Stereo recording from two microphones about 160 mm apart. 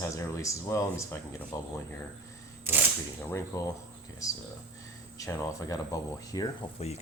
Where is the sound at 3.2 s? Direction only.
15° left (ahead or behind).